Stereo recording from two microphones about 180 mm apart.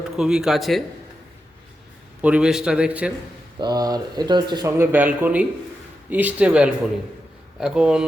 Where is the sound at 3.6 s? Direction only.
20° right (ahead or behind).